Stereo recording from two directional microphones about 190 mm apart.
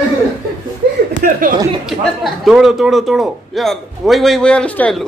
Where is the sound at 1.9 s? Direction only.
Centre (ahead or behind).